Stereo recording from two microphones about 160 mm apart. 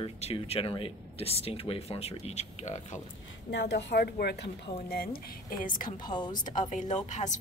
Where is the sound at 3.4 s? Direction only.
90° left.